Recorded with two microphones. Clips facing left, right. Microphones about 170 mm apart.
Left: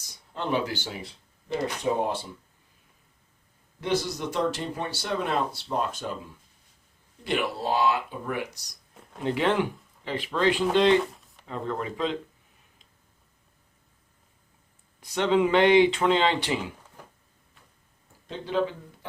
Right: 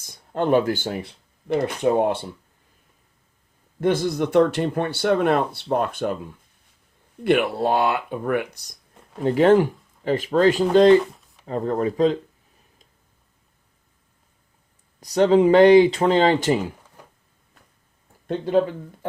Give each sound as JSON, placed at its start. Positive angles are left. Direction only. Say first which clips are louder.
{"t": 0.0, "sound": "speech", "louder": "right 10 dB", "side_deg": -50}
{"t": 3.8, "sound": "speech", "louder": "right 7 dB", "side_deg": -50}
{"t": 7.3, "sound": "speech", "louder": "right 8 dB", "side_deg": -60}
{"t": 9.2, "sound": "speech", "louder": "right 9 dB", "side_deg": -40}
{"t": 15.0, "sound": "speech", "louder": "right 7 dB", "side_deg": -40}
{"t": 18.3, "sound": "speech", "louder": "right 9 dB", "side_deg": -50}